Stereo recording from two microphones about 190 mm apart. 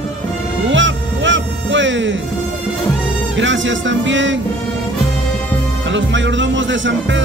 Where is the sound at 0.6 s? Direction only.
80° right.